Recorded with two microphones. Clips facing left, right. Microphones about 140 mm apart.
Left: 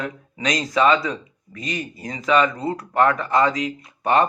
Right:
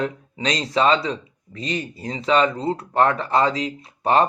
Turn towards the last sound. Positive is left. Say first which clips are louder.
# even
turn(degrees=-30)  # may be behind; listen again after turning